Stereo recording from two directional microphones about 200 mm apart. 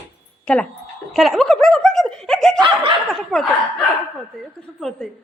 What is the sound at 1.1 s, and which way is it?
Snicker, centre (ahead or behind).